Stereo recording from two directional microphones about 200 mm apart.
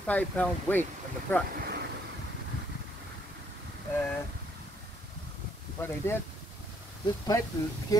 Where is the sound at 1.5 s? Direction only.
55° right (ahead or behind).